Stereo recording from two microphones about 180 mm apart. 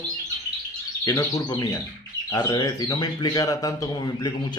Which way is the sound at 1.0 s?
20° left (ahead or behind).